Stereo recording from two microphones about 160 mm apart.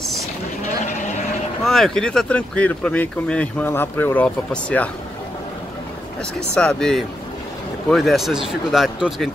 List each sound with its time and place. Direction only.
1.6 s speech: centre (ahead or behind)
6.5 s speech: 5° left (ahead or behind)